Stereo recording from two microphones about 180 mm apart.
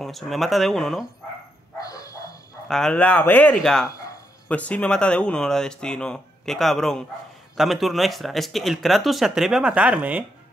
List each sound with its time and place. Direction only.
0.0 s speech: centre (ahead or behind)
1.8 s dog: 20° left (ahead or behind)
2.7 s speech: 5° left (ahead or behind)